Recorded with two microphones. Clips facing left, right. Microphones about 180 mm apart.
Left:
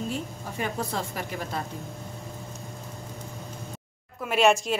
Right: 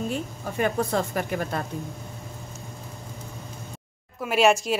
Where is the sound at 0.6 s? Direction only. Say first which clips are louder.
Right 6 dB; 55° right (ahead or behind).